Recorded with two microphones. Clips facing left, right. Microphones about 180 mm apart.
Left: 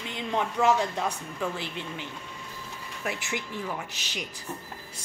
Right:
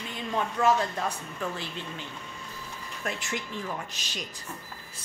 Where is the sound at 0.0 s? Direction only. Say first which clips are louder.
Left 1 dB; 20° left (ahead or behind).